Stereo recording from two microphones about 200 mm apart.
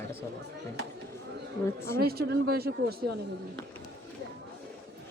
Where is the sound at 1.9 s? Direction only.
50° right (ahead or behind).